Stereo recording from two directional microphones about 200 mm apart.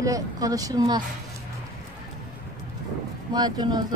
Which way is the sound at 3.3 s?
20° right (ahead or behind).